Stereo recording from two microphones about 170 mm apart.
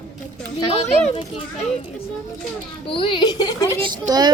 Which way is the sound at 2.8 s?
30° left (ahead or behind).